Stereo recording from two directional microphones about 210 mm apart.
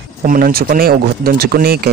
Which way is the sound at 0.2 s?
45° right (ahead or behind).